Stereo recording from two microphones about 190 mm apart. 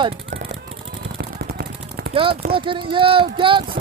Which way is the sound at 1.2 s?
60° right (ahead or behind).